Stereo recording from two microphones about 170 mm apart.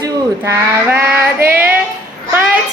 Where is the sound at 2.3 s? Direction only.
10° right (ahead or behind).